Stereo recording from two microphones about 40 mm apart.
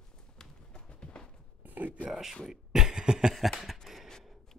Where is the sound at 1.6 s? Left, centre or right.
Right.